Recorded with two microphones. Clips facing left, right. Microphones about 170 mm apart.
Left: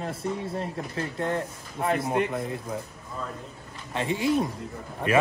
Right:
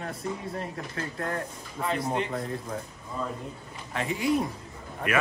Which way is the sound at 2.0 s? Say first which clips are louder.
Left 3 dB; 5° left (ahead or behind).